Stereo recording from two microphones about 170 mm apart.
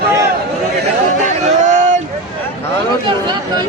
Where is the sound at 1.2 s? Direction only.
45° right (ahead or behind).